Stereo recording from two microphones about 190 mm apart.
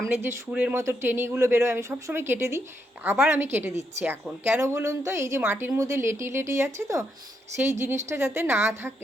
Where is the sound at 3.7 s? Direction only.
35° right (ahead or behind).